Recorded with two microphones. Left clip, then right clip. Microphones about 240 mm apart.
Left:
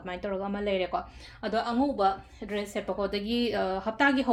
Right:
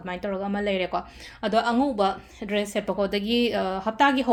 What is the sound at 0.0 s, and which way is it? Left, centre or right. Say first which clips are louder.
Speech: right 3 dB; centre.